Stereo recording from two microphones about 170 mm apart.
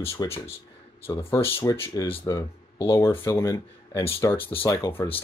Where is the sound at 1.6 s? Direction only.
20° left (ahead or behind).